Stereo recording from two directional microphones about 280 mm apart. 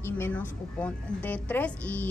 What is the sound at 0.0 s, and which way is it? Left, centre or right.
A woman's voice, centre.